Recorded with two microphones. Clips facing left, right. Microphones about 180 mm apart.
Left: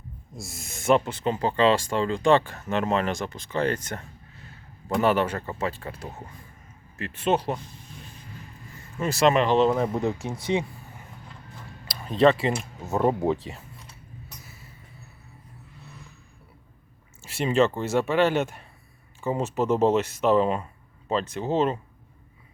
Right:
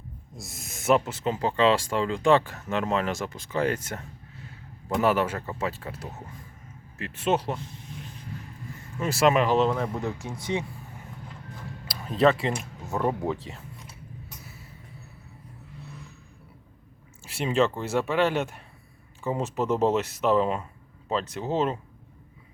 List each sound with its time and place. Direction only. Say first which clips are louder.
0.4 s speech: left 1 dB; centre (ahead or behind)
9.0 s speech: left 1 dB; 5° right (ahead or behind)
9.6 s speech: left 4 dB; 15° left (ahead or behind)
11.9 s speech: left 2 dB; 5° right (ahead or behind)
12.9 s speech: left 4 dB; 25° left (ahead or behind)
17.2 s speech: left 2 dB; centre (ahead or behind)